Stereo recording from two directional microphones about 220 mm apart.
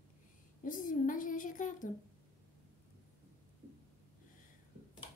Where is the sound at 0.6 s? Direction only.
40° left (ahead or behind).